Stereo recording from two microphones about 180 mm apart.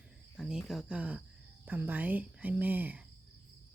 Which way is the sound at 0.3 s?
5° right (ahead or behind).